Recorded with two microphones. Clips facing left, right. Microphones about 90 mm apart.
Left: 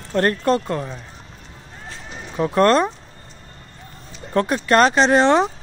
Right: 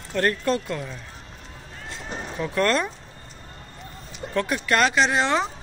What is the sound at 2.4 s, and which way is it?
Speech, 35° left (ahead or behind).